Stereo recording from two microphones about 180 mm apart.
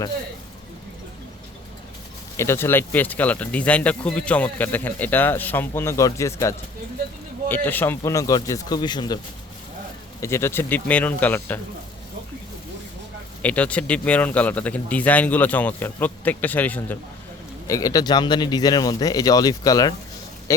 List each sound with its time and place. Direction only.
2.4 s speech: 15° left (ahead or behind)
10.2 s speech: 15° left (ahead or behind)
13.4 s speech: 10° left (ahead or behind)
17.7 s speech: 20° left (ahead or behind)